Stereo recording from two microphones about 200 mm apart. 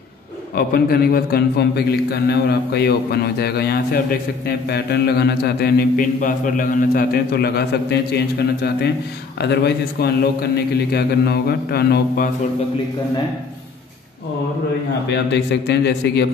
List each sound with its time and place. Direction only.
0.6 s a man's voice: 50° left (ahead or behind)
15.0 s a man's voice: 60° left (ahead or behind)